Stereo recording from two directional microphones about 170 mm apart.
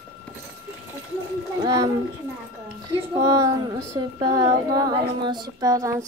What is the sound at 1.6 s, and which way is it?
A woman's voice, 20° right (ahead or behind).